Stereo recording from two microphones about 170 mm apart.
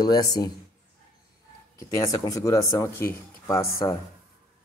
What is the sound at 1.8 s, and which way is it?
A man's voice, 20° left (ahead or behind).